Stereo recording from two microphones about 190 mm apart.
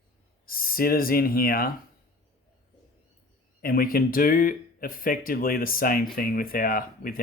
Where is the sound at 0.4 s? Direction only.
50° left (ahead or behind).